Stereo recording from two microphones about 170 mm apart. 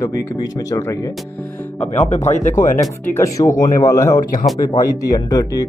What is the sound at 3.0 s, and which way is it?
Speech, 15° left (ahead or behind).